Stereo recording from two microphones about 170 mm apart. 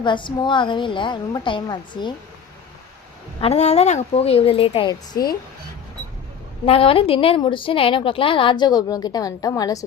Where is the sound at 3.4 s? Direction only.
40° left (ahead or behind).